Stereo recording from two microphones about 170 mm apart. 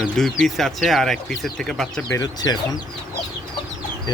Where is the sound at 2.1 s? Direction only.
20° left (ahead or behind).